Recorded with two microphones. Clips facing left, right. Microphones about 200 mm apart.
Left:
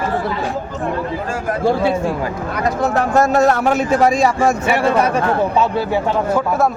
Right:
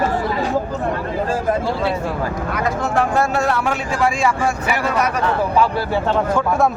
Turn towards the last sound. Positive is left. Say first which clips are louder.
# left 5 dB
turn(degrees=30)  # may be behind; listen again after turning